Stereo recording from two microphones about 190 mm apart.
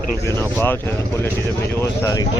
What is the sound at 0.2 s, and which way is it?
Speech, 15° left (ahead or behind).